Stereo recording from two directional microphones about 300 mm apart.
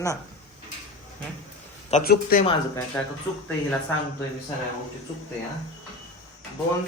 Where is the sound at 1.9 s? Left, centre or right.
Left.